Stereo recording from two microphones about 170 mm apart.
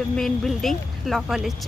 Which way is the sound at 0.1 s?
Centre (ahead or behind).